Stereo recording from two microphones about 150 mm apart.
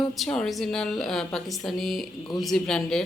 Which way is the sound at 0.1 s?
Centre (ahead or behind).